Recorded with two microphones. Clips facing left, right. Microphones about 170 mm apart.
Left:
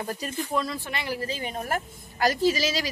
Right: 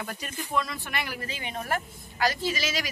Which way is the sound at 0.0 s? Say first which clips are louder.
Left 5 dB; 30° left (ahead or behind).